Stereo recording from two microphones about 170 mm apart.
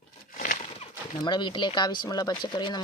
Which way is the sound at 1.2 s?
25° left (ahead or behind).